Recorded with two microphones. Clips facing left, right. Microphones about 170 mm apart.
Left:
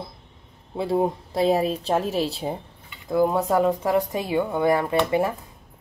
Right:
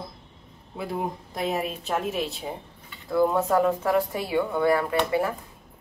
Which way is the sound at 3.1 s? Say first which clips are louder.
Left 1 dB; 15° left (ahead or behind).